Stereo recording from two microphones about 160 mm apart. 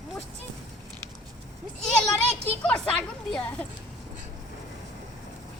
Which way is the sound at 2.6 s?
5° left (ahead or behind).